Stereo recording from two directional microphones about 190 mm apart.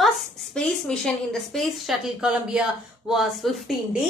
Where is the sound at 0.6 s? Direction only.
5° left (ahead or behind).